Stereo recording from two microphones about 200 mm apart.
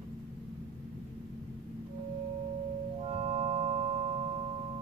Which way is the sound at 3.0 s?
30° right (ahead or behind).